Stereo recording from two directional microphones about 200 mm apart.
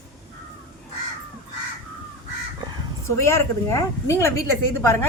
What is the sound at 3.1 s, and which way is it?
A woman's voice, 15° left (ahead or behind).